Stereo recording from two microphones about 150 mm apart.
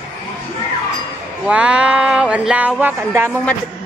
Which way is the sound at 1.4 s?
10° right (ahead or behind).